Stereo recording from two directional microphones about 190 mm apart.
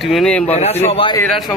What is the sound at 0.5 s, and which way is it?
Speech, 35° left (ahead or behind).